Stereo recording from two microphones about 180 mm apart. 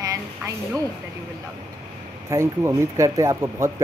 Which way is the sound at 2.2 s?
15° right (ahead or behind).